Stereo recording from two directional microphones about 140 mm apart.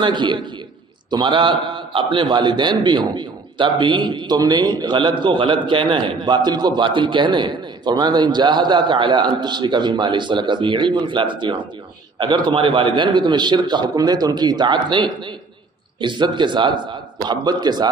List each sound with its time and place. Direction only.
0.0 s a man's voice: 35° right (ahead or behind)